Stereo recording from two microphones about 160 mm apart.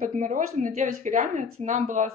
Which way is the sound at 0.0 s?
55° right (ahead or behind).